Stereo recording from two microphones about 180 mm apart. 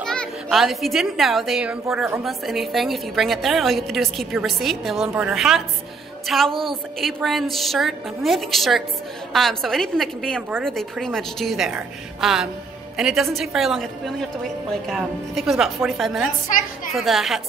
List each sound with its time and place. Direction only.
0.0 s a child's voice: 5° left (ahead or behind)